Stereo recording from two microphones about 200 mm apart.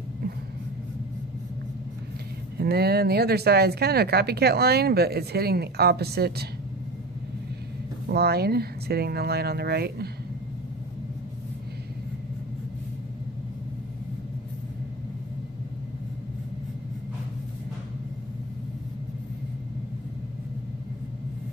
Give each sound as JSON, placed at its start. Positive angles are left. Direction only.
{"t": 2.5, "sound": "speech", "side_deg": -55}
{"t": 8.1, "sound": "speech", "side_deg": -55}